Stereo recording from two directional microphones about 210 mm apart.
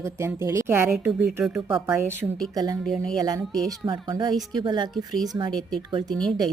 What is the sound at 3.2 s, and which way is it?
A woman's voice, 15° right (ahead or behind).